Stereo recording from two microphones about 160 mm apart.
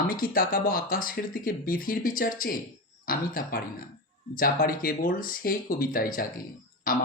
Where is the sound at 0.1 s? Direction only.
60° left (ahead or behind).